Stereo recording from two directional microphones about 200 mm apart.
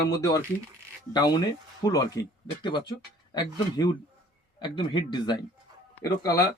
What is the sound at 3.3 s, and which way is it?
Speech, 20° left (ahead or behind).